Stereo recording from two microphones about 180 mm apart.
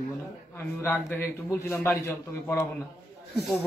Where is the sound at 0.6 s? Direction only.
10° left (ahead or behind).